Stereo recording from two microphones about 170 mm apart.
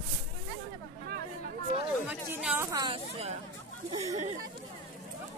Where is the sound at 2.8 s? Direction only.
35° right (ahead or behind).